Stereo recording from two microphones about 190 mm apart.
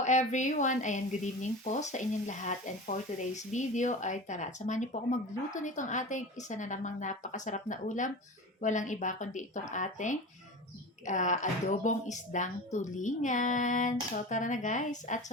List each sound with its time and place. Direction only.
0.0 s a woman's voice: 40° left (ahead or behind)